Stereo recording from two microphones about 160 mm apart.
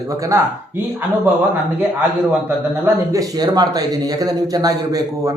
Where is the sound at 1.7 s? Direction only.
10° right (ahead or behind).